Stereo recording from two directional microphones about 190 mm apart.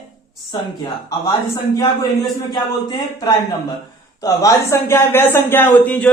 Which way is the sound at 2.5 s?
20° left (ahead or behind).